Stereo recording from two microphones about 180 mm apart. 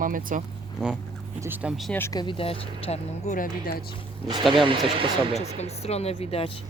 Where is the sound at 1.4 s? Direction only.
10° right (ahead or behind).